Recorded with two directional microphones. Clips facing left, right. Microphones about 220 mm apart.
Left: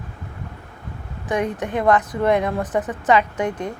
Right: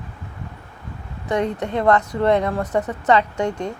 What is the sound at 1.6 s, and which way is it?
Speech, 15° left (ahead or behind).